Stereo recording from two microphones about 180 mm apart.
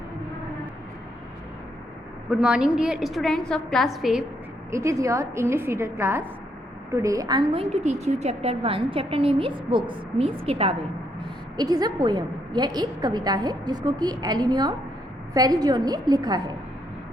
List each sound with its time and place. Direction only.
2.3 s a woman's voice: 5° right (ahead or behind)
4.7 s a woman's voice: 15° right (ahead or behind); by 10.8 s 35° right (ahead or behind)
11.5 s a woman's voice: 20° right (ahead or behind)